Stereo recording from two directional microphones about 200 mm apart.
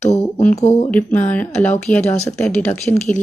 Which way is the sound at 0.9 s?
10° left (ahead or behind).